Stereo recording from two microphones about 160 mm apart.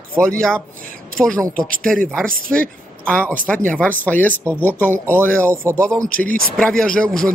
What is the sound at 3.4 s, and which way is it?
A man's voice, 10° left (ahead or behind).